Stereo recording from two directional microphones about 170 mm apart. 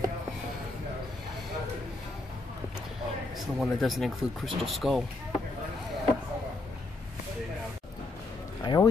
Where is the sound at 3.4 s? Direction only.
Centre (ahead or behind).